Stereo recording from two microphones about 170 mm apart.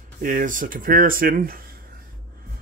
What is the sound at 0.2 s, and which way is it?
Speech, 55° right (ahead or behind).